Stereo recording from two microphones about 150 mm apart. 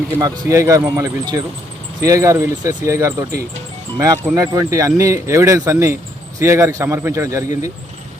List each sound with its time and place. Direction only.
0.2 s speech: 20° right (ahead or behind)